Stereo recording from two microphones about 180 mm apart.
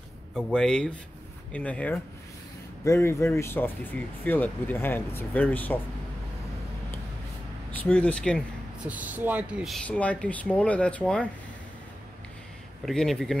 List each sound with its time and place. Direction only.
0.5 s speech: 5° left (ahead or behind)
7.8 s speech: 5° left (ahead or behind)
8.8 s speech: 10° right (ahead or behind); by 11.2 s 5° left (ahead or behind)
12.8 s speech: centre (ahead or behind)